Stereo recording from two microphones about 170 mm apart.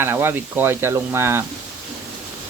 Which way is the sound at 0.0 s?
15° right (ahead or behind).